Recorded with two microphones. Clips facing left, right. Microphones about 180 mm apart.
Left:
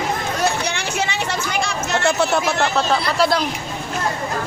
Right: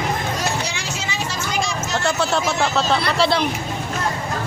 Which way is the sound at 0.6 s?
60° left (ahead or behind).